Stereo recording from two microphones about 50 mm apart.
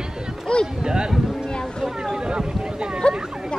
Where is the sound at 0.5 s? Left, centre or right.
Centre.